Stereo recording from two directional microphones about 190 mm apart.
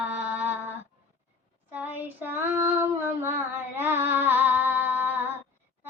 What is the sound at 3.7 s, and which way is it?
Female singing, 10° right (ahead or behind).